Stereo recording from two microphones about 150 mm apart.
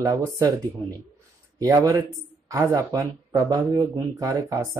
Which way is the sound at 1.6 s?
20° right (ahead or behind).